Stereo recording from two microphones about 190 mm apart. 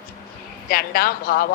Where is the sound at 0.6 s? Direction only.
50° left (ahead or behind).